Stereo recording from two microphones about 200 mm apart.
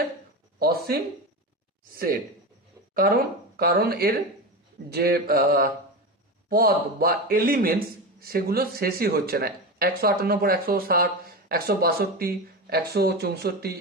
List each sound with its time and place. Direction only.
0.6 s speech: 50° right (ahead or behind)
2.9 s speech: 45° right (ahead or behind)